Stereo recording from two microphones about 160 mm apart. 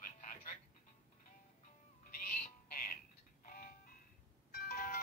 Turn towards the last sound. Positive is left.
turn(degrees=65)  # may be behind; listen again after turning